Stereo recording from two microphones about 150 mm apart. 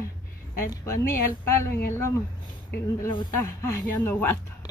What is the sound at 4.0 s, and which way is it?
Speech, 15° left (ahead or behind).